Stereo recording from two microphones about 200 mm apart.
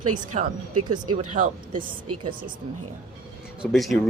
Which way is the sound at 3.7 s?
Centre (ahead or behind).